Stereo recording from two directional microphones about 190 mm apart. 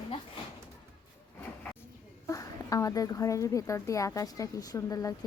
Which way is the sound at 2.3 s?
15° left (ahead or behind).